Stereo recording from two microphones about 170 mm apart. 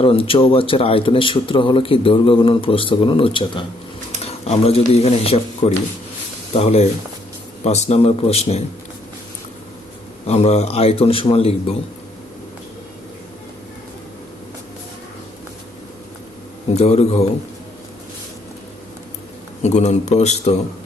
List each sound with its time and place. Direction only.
0.0 s speech: 35° left (ahead or behind)
4.2 s a sound: 35° left (ahead or behind)
4.9 s speech: 35° left (ahead or behind)
10.2 s speech: 40° left (ahead or behind)
16.7 s speech: 40° left (ahead or behind)
19.6 s speech: 40° left (ahead or behind)